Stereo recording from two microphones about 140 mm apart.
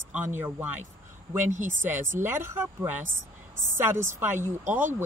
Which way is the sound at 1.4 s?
60° right (ahead or behind).